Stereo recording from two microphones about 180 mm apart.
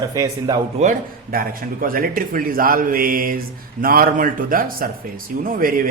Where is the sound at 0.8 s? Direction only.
50° right (ahead or behind).